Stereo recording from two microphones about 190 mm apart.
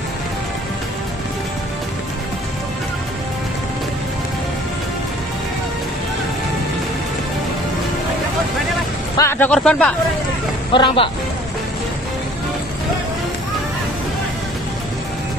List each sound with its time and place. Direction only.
9.1 s speech: 15° left (ahead or behind)
10.7 s speech: 25° left (ahead or behind)